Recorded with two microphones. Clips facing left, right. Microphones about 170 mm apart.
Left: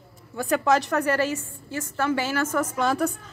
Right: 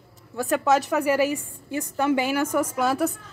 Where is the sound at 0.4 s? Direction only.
Centre (ahead or behind).